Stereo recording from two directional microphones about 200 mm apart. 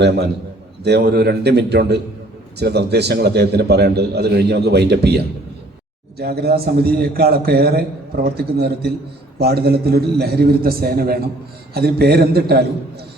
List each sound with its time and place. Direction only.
0.9 s a man's voice: 55° right (ahead or behind)